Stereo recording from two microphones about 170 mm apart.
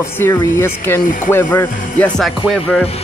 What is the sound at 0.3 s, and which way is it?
Speech, 25° left (ahead or behind).